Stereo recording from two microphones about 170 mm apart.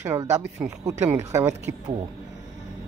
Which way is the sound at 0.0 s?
15° right (ahead or behind).